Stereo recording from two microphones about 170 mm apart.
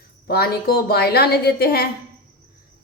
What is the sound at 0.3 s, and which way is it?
A woman's voice, 65° left (ahead or behind).